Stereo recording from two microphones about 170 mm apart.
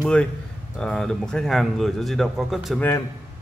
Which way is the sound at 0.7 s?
5° left (ahead or behind).